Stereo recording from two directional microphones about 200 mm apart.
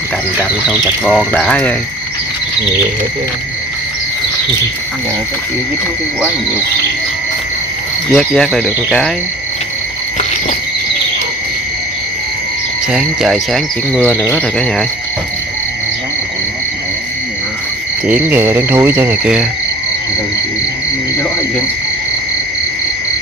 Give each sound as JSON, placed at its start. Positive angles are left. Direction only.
{"t": 1.0, "sound": "speech", "side_deg": 5}
{"t": 8.1, "sound": "cricket", "side_deg": 5}
{"t": 12.9, "sound": "cricket", "side_deg": 0}
{"t": 18.0, "sound": "frog", "side_deg": -10}